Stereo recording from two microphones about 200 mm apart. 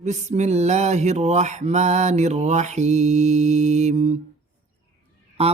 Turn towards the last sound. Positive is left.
turn(degrees=-30)  # may be behind; listen again after turning